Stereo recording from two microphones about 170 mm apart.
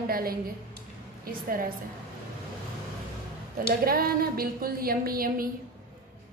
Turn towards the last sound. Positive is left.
turn(degrees=-60)  # may be behind; listen again after turning